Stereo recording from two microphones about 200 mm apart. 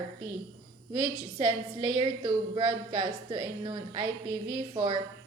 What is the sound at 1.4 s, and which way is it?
A woman's voice, 25° right (ahead or behind).